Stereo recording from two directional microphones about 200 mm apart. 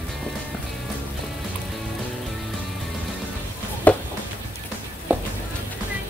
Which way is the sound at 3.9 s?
10° left (ahead or behind).